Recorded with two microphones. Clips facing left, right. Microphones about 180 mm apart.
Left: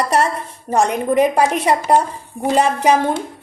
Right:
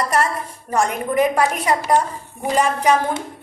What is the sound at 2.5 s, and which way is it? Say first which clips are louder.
Speech: left 2 dB; 30° left (ahead or behind).